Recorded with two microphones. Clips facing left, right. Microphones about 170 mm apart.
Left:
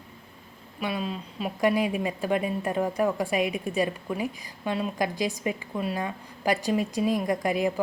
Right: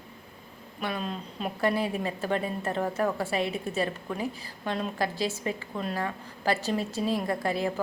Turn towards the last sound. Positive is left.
turn(degrees=15)  # may be behind; listen again after turning